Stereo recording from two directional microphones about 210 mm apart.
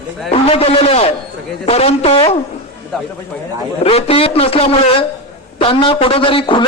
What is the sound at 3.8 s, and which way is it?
A man's voice, 30° left (ahead or behind).